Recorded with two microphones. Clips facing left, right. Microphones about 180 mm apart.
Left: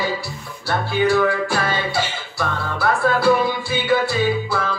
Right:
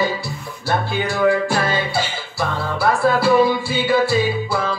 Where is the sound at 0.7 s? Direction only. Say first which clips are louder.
Left 3 dB; 15° right (ahead or behind).